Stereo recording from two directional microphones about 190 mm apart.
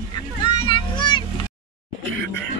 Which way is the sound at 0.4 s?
25° left (ahead or behind).